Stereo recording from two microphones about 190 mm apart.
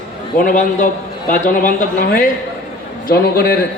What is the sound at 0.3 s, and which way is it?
A man's voice, 45° left (ahead or behind).